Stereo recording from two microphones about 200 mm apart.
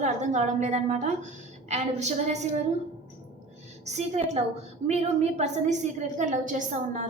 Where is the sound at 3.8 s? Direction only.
35° right (ahead or behind).